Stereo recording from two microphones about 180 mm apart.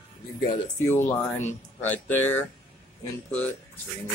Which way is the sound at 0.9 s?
15° left (ahead or behind).